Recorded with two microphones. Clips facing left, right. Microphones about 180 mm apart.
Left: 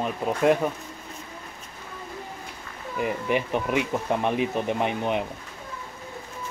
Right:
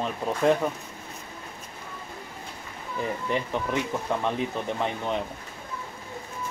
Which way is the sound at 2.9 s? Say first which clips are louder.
Left 3 dB; 15° left (ahead or behind).